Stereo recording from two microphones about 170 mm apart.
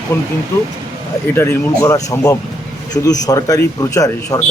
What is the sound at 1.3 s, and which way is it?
A man's voice, 15° left (ahead or behind).